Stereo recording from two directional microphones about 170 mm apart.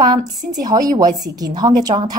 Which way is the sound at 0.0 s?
25° right (ahead or behind).